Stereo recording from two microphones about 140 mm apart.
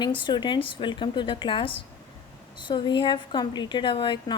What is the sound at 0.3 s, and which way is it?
A woman's voice, 35° left (ahead or behind).